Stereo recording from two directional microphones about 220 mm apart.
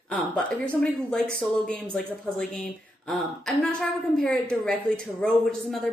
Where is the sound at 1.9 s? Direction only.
Centre (ahead or behind).